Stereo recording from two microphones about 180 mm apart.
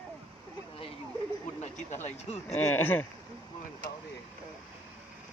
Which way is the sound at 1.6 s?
40° left (ahead or behind).